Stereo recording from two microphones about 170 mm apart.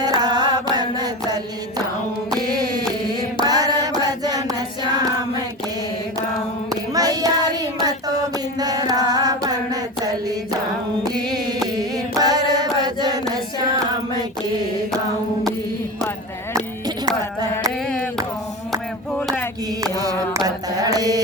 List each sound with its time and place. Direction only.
0.0 s mantra: 25° right (ahead or behind)
3.4 s a sound: 25° right (ahead or behind)
6.7 s child singing: 20° right (ahead or behind)
8.5 s music: 20° right (ahead or behind)
12.2 s mantra: 25° right (ahead or behind)
17.8 s a sound: centre (ahead or behind)
19.8 s mantra: 20° right (ahead or behind)